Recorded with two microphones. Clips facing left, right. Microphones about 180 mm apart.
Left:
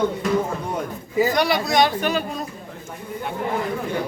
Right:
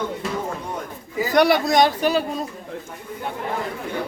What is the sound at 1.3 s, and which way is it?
Speech, 55° right (ahead or behind).